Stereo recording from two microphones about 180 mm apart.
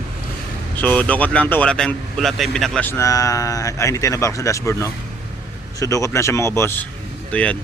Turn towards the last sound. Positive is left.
turn(degrees=5)  # may be behind; listen again after turning